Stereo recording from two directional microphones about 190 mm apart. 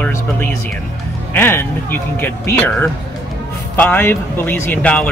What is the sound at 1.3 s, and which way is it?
Speech, 10° left (ahead or behind).